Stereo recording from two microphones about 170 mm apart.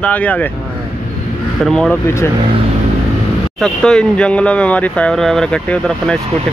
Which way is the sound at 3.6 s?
5° left (ahead or behind).